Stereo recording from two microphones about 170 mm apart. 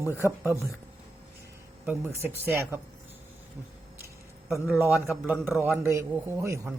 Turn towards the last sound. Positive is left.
turn(degrees=-15)  # may be behind; listen again after turning